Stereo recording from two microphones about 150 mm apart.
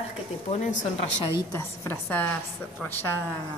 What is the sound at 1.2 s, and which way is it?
Speech, 25° left (ahead or behind).